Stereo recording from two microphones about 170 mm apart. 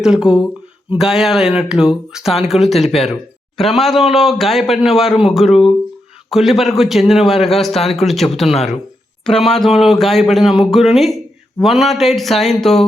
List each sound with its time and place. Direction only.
0.0 s a man's voice: 5° right (ahead or behind)